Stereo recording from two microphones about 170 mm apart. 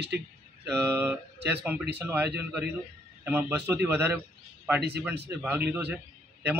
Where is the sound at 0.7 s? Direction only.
15° right (ahead or behind).